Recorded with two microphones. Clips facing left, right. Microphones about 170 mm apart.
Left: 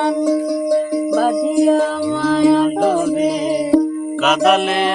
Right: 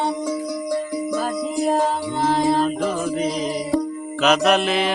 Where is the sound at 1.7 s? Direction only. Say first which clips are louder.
Left 6 dB; 90° left.